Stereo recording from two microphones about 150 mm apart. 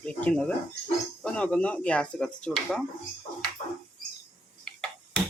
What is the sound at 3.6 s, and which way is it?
Bird, 40° left (ahead or behind).